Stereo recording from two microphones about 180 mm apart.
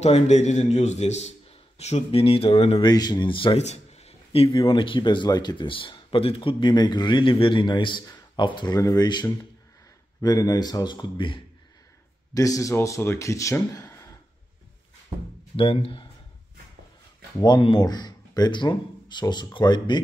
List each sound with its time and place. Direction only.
0.0 s a man's voice: 40° left (ahead or behind)
2.9 s a man's voice: 20° left (ahead or behind)
15.5 s speech: 30° left (ahead or behind)
17.4 s a man's voice: 25° left (ahead or behind)